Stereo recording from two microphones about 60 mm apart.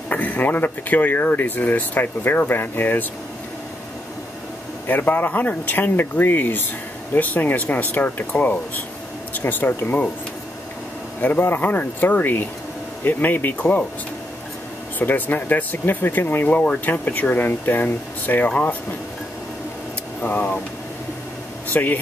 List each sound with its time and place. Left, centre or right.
0.1 s speech: left
4.8 s speech: left
11.1 s speech: left
15.0 s speech: left
20.2 s speech: left
21.6 s speech: left